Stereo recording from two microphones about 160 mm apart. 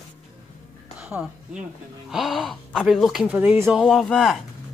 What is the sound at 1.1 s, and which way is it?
A woman's voice, 5° right (ahead or behind).